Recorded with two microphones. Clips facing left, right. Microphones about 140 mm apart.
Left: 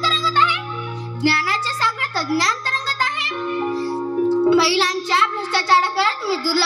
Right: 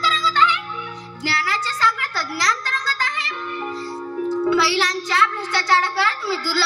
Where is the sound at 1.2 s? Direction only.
25° left (ahead or behind).